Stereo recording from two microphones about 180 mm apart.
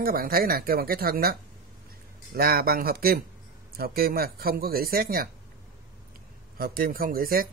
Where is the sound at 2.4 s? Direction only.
55° right (ahead or behind).